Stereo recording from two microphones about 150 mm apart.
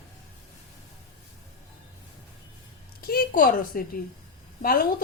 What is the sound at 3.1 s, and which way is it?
A woman's voice, 75° left (ahead or behind).